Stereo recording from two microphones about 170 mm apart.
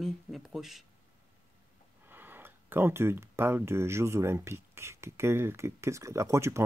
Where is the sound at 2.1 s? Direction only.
10° right (ahead or behind).